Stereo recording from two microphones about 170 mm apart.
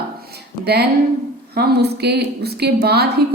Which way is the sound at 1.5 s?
70° right (ahead or behind).